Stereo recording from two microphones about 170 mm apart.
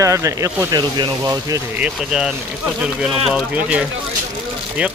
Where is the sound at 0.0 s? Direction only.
20° right (ahead or behind).